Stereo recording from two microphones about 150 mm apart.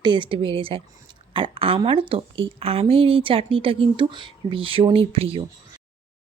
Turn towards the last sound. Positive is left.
turn(degrees=-40)  # may be behind; listen again after turning